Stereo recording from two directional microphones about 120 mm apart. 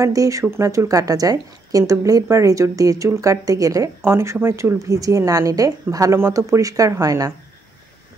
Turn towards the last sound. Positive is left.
turn(degrees=-30)  # may be behind; listen again after turning